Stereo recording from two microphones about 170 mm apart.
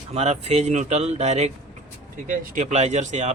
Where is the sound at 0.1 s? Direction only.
40° right (ahead or behind).